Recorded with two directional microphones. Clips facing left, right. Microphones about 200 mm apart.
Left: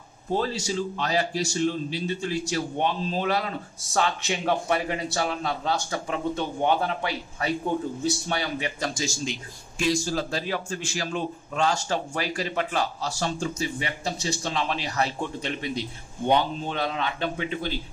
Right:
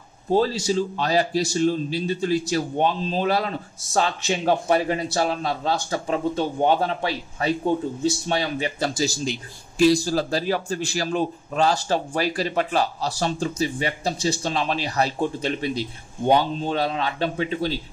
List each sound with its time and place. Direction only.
0.3 s a man's voice: 30° right (ahead or behind)